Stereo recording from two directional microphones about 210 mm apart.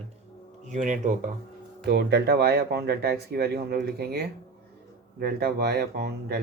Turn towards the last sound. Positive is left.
turn(degrees=-50)  # may be behind; listen again after turning